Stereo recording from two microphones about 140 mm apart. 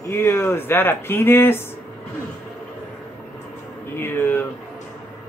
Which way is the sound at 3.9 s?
15° left (ahead or behind).